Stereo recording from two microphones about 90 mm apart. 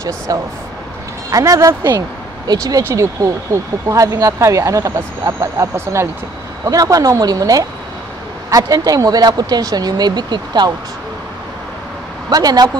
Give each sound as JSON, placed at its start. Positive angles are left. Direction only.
{"t": 0.3, "sound": "speech", "side_deg": -40}
{"t": 1.9, "sound": "speech", "side_deg": -50}
{"t": 2.8, "sound": "speech", "side_deg": -35}
{"t": 12.3, "sound": "speech", "side_deg": -45}